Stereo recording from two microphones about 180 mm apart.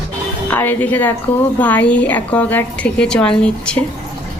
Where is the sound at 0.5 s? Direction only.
10° left (ahead or behind).